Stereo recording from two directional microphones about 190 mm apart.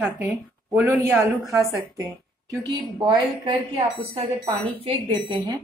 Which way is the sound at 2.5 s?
25° right (ahead or behind).